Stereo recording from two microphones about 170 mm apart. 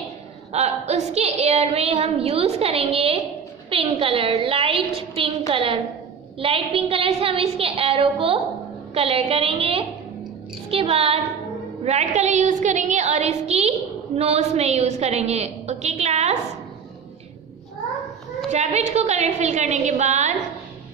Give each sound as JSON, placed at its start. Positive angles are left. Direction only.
{"t": 0.5, "sound": "a woman's voice", "side_deg": -40}
{"t": 10.7, "sound": "music", "side_deg": -35}
{"t": 11.8, "sound": "a woman's voice", "side_deg": -40}
{"t": 18.5, "sound": "a woman's voice", "side_deg": -40}